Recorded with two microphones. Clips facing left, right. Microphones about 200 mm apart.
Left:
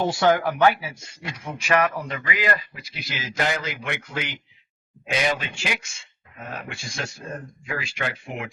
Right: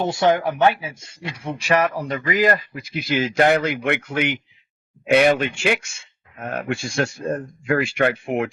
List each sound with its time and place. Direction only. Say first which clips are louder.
0.0 s speech: right 2 dB; 20° right (ahead or behind); by 8.4 s 60° right (ahead or behind)